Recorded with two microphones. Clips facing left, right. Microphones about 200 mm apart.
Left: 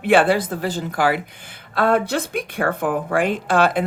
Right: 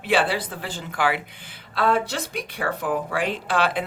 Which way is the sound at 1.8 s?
55° left (ahead or behind).